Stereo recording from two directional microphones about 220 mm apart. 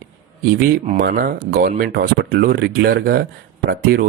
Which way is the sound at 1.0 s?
45° right (ahead or behind).